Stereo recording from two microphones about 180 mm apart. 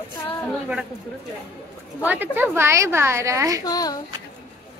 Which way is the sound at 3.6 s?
20° left (ahead or behind).